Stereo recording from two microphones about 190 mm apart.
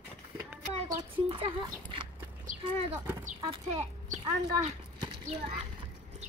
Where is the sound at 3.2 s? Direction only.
30° right (ahead or behind).